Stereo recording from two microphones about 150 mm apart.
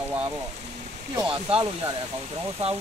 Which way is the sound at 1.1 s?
30° right (ahead or behind).